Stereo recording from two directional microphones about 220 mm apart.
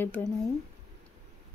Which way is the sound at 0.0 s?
5° left (ahead or behind).